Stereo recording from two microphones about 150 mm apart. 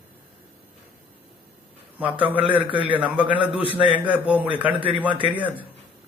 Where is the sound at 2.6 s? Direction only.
35° right (ahead or behind).